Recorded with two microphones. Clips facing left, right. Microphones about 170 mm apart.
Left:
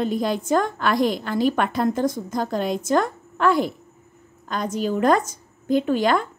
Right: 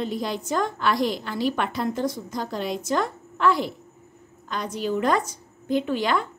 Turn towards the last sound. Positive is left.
turn(degrees=45)  # may be behind; listen again after turning